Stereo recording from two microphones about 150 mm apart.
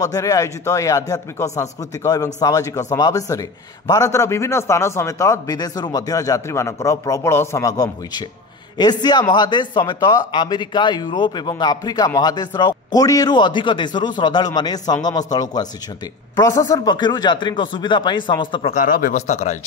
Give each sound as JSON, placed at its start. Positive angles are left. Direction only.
{"t": 0.0, "sound": "speech", "side_deg": 25}
{"t": 18.7, "sound": "speech", "side_deg": 65}